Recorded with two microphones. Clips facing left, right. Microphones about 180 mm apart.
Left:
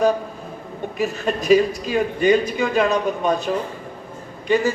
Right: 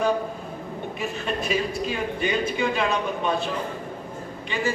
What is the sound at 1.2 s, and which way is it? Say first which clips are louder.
A man's voice: left 10 dB; 40° left (ahead or behind).